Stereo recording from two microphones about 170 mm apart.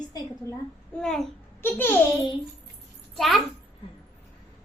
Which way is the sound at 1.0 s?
5° left (ahead or behind).